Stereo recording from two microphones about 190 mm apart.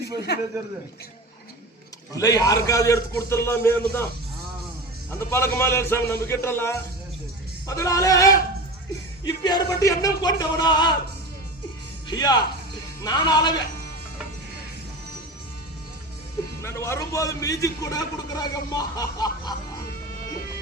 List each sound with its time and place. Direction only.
0.3 s a man's voice: 60° left (ahead or behind)
2.1 s a man's voice: 20° left (ahead or behind)
5.3 s a man's voice: 15° left (ahead or behind)
12.0 s speech: 20° left (ahead or behind)
16.6 s a man's voice: 15° left (ahead or behind)